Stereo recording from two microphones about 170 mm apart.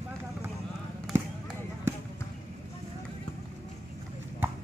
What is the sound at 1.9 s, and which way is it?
Basketball bounce, 15° right (ahead or behind).